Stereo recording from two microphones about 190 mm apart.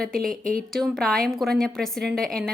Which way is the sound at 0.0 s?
Centre (ahead or behind).